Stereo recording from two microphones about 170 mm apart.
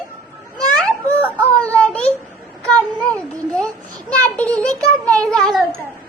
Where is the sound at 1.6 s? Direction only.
5° left (ahead or behind).